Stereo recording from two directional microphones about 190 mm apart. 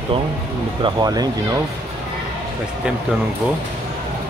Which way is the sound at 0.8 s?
20° right (ahead or behind).